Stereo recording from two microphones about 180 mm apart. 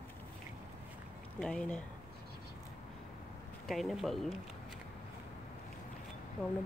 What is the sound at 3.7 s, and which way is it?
Speech, centre (ahead or behind).